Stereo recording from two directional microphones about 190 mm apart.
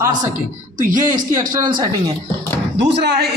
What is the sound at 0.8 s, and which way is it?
Speech, 45° right (ahead or behind).